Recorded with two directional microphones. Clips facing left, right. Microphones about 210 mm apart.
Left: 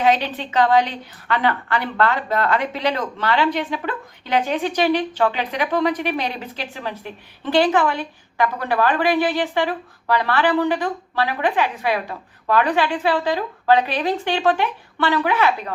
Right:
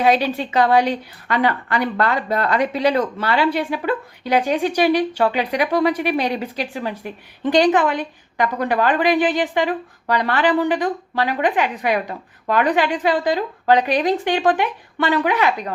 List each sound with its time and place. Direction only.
0.0 s a woman's voice: 10° right (ahead or behind)